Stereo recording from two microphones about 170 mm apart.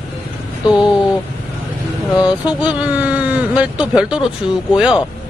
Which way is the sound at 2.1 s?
25° left (ahead or behind).